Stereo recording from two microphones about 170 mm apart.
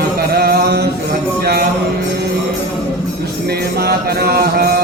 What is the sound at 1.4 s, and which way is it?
Music, 65° right (ahead or behind).